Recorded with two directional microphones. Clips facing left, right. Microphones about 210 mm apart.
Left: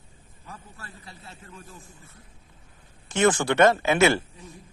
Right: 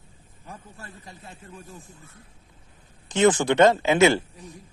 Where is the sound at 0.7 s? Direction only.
15° right (ahead or behind).